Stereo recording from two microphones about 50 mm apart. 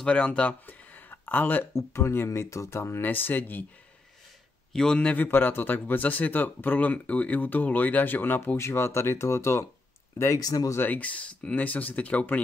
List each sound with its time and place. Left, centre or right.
0.0 s speech: left
0.7 s a sound: left
1.7 s speech: left
2.8 s speech: left
3.1 s speech: left
4.7 s a man's voice: centre
5.1 s speech: left
8.5 s speech: left
10.8 s speech: left